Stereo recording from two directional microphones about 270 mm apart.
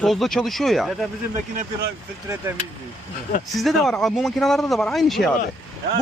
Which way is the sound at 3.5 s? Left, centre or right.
Centre.